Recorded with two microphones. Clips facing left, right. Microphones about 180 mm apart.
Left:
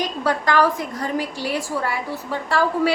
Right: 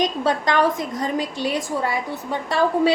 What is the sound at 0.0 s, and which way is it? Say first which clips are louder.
A woman's voice: right 2 dB; 20° right (ahead or behind).